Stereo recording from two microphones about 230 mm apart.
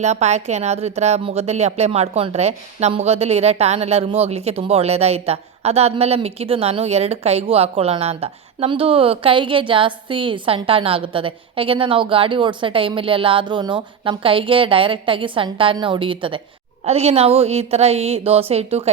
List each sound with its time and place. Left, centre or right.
0.0 s speech: right